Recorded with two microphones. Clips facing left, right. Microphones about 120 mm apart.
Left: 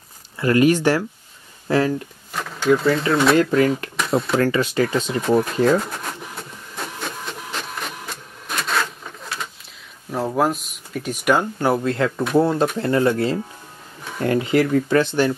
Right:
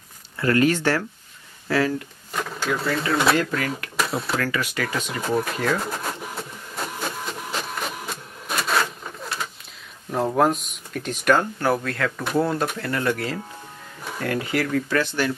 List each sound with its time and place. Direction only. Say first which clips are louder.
0.4 s speech: left 4 dB; 15° left (ahead or behind)
2.3 s speech: left 7 dB; centre (ahead or behind)
3.3 s speech: left 8 dB; 30° left (ahead or behind)
3.9 s speech: left 5 dB; 5° right (ahead or behind)
4.4 s speech: left 7 dB; 30° left (ahead or behind)
5.2 s speech: left 4 dB; centre (ahead or behind)
5.8 s printer: left 1 dB; centre (ahead or behind)
10.1 s speech: even; centre (ahead or behind); by 15.3 s 25° left (ahead or behind)